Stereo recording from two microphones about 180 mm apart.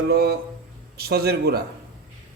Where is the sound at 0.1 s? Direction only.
60° right (ahead or behind).